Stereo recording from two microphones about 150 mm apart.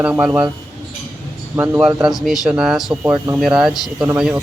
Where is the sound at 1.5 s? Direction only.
15° right (ahead or behind).